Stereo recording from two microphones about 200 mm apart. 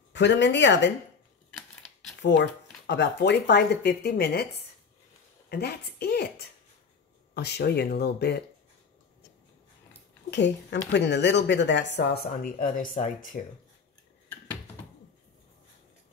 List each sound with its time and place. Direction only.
0.1 s speech: 60° left (ahead or behind)
1.5 s typewriter: 5° left (ahead or behind)
2.2 s speech: 60° left (ahead or behind)
5.5 s a woman's voice: 50° left (ahead or behind)
10.3 s speech: 60° left (ahead or behind); by 13.4 s 40° left (ahead or behind)